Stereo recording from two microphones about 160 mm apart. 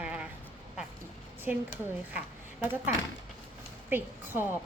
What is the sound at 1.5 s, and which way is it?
Speech, 5° right (ahead or behind).